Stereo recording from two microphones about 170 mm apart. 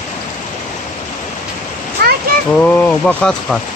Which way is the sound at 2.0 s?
70° right (ahead or behind).